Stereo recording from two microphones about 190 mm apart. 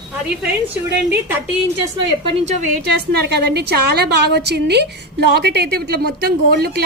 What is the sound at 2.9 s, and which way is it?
Speech, 60° right (ahead or behind).